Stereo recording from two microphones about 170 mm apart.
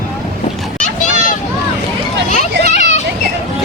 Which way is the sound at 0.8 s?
50° left (ahead or behind).